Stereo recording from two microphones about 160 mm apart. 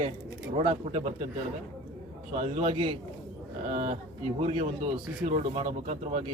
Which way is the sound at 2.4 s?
40° right (ahead or behind).